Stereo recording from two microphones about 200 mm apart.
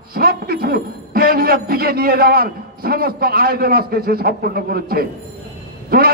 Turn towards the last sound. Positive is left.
turn(degrees=-50)  # may be behind; listen again after turning